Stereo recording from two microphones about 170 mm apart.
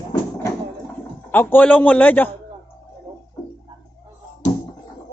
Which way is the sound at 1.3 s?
10° left (ahead or behind).